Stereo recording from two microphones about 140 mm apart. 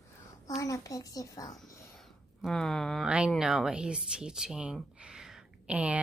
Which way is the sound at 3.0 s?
10° right (ahead or behind).